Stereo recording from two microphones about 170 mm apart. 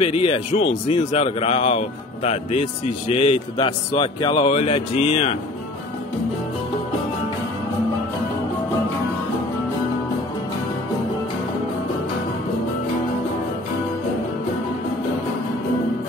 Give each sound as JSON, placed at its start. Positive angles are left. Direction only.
{"t": 0.0, "sound": "speech", "side_deg": 35}